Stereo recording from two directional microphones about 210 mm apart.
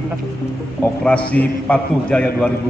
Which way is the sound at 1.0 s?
5° left (ahead or behind).